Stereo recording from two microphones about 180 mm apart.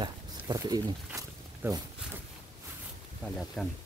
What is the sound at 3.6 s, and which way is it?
Speech, 5° left (ahead or behind).